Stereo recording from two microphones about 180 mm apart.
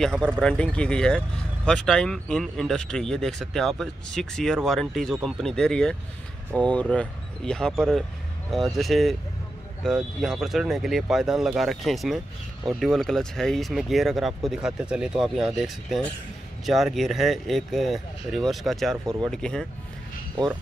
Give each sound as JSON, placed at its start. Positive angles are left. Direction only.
{"t": 0.0, "sound": "speech", "side_deg": 5}
{"t": 19.0, "sound": "speech", "side_deg": -20}
{"t": 19.3, "sound": "speech", "side_deg": 5}